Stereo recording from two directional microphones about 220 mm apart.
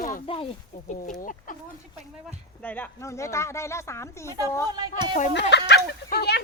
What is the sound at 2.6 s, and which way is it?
Speech, 10° left (ahead or behind).